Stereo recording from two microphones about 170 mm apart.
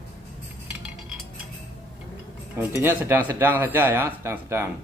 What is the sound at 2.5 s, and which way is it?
Speech, 10° right (ahead or behind).